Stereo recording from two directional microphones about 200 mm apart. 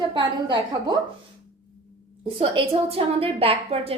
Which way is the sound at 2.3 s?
30° right (ahead or behind).